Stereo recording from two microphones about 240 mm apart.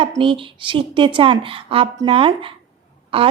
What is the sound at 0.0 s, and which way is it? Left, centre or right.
Speech, right.